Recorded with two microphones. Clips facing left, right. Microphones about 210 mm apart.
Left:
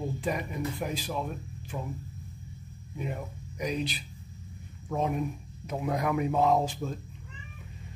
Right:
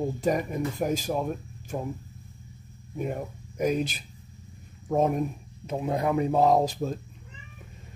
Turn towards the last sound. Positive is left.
turn(degrees=-40)  # may be behind; listen again after turning